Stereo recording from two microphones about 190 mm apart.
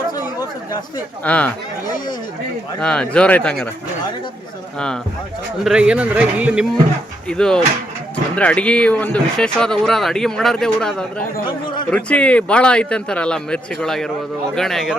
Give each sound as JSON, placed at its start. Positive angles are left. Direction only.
{"t": 1.2, "sound": "speech", "side_deg": 5}
{"t": 2.8, "sound": "speech", "side_deg": 5}
{"t": 5.6, "sound": "speech", "side_deg": -5}
{"t": 7.3, "sound": "speech", "side_deg": 5}